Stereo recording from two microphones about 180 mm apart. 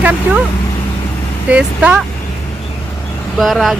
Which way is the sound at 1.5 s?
5° right (ahead or behind).